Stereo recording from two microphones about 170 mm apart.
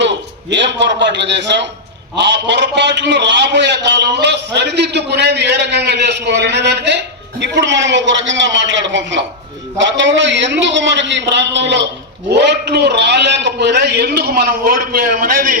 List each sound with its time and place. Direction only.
0.5 s a man's voice: 90° right; by 15.5 s 55° right (ahead or behind)